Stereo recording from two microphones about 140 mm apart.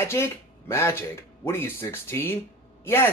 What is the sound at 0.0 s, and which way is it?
Speech, 20° left (ahead or behind).